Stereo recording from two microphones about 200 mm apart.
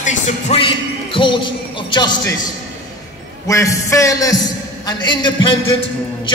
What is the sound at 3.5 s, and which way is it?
A man's voice, 15° left (ahead or behind).